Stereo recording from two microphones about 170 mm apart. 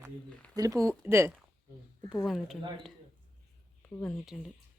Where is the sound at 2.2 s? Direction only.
Centre (ahead or behind).